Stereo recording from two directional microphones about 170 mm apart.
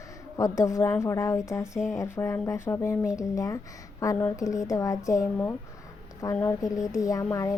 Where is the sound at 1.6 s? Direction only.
5° right (ahead or behind).